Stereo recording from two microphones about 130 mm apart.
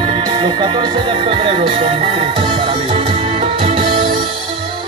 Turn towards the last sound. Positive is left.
turn(degrees=-45)  # may be behind; listen again after turning